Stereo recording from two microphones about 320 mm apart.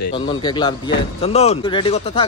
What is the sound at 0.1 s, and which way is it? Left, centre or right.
A man's voice, centre.